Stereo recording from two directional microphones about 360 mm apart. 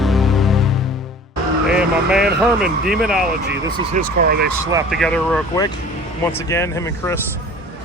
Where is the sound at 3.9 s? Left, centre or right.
Right.